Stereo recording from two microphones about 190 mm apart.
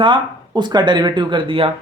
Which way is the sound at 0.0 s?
25° right (ahead or behind).